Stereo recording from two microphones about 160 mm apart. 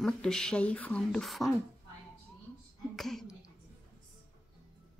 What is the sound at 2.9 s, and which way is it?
Speech, centre (ahead or behind).